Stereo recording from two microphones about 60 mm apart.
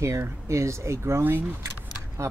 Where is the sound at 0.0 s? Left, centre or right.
Right.